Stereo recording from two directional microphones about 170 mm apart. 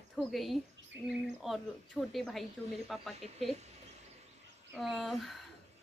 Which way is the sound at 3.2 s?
40° right (ahead or behind).